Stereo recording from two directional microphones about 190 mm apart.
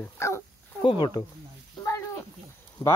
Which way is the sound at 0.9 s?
25° left (ahead or behind).